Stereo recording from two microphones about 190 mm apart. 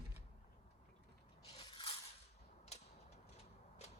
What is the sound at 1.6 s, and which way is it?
Scissors, 25° left (ahead or behind).